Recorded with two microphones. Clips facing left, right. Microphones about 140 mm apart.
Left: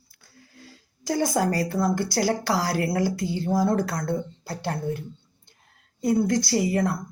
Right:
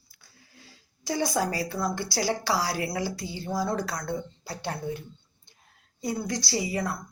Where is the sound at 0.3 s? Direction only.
50° left (ahead or behind).